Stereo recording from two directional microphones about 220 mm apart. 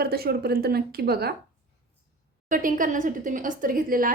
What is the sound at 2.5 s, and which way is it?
A woman's voice, 35° right (ahead or behind).